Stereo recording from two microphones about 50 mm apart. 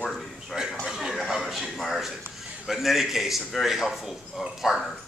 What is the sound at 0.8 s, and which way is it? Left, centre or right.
A man's voice, centre.